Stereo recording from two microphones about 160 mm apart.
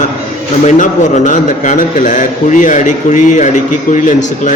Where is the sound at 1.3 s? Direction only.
50° left (ahead or behind).